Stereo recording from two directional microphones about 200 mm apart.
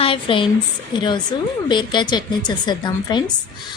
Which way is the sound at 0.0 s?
25° left (ahead or behind).